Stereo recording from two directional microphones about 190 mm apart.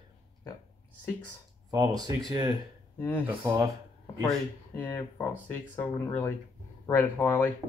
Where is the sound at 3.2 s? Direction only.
15° right (ahead or behind).